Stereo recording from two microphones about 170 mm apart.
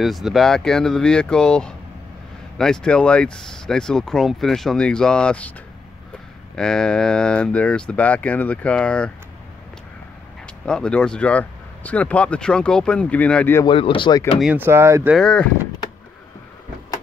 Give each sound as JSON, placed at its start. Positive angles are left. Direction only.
{"t": 0.0, "sound": "speech", "side_deg": 0}
{"t": 6.5, "sound": "speech", "side_deg": 5}
{"t": 10.4, "sound": "speech", "side_deg": 5}
{"t": 13.7, "sound": "speech", "side_deg": 30}
{"t": 14.4, "sound": "speech", "side_deg": -10}
{"t": 15.1, "sound": "speech", "side_deg": 5}